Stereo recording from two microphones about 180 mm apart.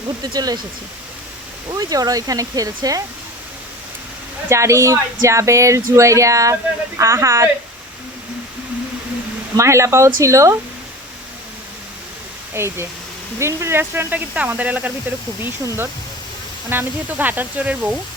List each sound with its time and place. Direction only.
0.2 s speech: 20° right (ahead or behind)
1.7 s speech: 20° right (ahead or behind)
4.4 s speech: 15° right (ahead or behind)
9.6 s speech: 15° right (ahead or behind)
12.5 s speech: 15° right (ahead or behind)